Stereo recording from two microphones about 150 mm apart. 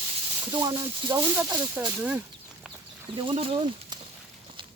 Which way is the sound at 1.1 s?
15° right (ahead or behind).